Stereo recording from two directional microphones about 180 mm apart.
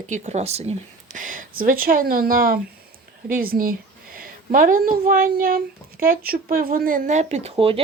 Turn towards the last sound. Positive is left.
turn(degrees=-30)  # may be behind; listen again after turning